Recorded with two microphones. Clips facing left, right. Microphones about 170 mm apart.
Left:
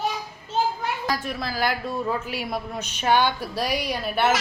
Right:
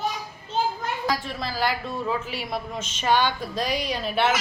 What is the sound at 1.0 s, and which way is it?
A woman's voice, 5° left (ahead or behind).